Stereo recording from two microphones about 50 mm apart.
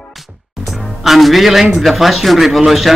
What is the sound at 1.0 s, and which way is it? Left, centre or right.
Music, centre.